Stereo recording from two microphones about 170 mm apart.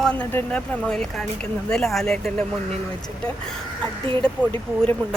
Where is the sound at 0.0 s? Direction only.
5° left (ahead or behind).